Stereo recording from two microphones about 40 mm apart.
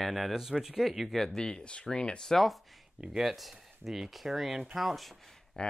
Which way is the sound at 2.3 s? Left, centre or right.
Centre.